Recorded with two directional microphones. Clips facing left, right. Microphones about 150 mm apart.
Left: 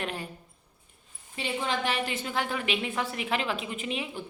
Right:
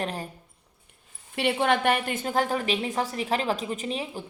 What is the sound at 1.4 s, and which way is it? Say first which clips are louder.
Speech: right 7 dB; 65° right (ahead or behind).